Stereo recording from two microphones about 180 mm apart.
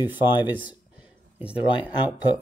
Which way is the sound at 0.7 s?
5° right (ahead or behind).